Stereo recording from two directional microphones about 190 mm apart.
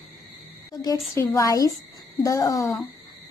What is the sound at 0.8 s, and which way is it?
A woman's voice, 20° left (ahead or behind).